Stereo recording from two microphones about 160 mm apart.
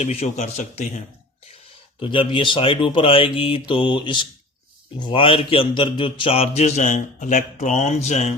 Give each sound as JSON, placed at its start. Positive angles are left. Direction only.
{"t": 0.0, "sound": "a man's voice", "side_deg": 40}
{"t": 2.0, "sound": "speech", "side_deg": 30}